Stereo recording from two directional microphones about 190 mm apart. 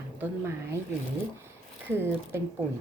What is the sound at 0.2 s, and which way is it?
Speech, 15° right (ahead or behind).